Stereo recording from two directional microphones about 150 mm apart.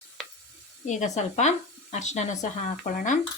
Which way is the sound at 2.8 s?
60° left (ahead or behind).